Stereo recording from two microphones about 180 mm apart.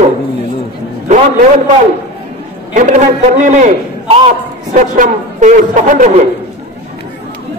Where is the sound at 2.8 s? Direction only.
45° right (ahead or behind).